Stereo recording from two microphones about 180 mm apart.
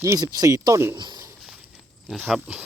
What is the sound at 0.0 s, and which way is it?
Speech, 15° right (ahead or behind).